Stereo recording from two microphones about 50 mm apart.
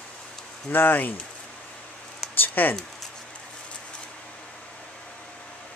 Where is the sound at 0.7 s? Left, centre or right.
Left.